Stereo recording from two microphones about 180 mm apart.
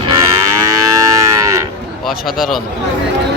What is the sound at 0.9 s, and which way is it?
Livestock, 15° right (ahead or behind).